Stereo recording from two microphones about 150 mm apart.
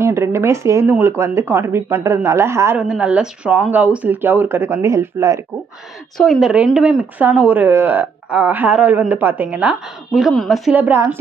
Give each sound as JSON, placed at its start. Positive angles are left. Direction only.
{"t": 0.0, "sound": "speech", "side_deg": -15}
{"t": 6.1, "sound": "speech", "side_deg": 0}
{"t": 10.8, "sound": "speech", "side_deg": -15}